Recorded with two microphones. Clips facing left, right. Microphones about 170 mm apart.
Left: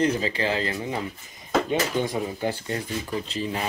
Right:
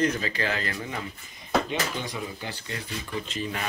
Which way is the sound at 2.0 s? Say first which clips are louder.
Left 8 dB; 50° left (ahead or behind).